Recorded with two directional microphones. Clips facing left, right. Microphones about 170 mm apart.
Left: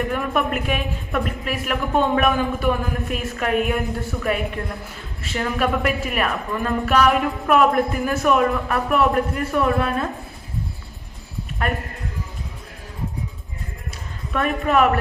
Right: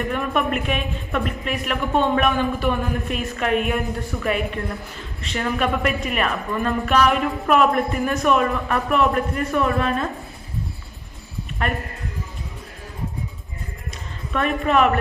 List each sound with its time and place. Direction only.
0.1 s a woman's voice: 5° left (ahead or behind)
14.3 s a woman's voice: 5° left (ahead or behind)